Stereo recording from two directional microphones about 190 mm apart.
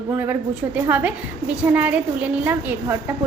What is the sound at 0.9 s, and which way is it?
A woman's voice, 10° right (ahead or behind).